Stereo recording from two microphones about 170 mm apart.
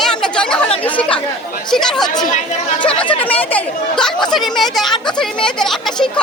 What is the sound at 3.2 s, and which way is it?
Speech, 10° left (ahead or behind).